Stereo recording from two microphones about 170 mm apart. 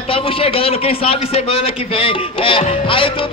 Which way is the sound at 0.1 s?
35° left (ahead or behind).